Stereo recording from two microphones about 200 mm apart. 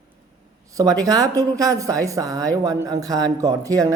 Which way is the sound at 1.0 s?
20° right (ahead or behind).